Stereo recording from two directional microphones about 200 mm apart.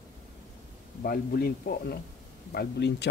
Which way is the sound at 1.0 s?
50° left (ahead or behind).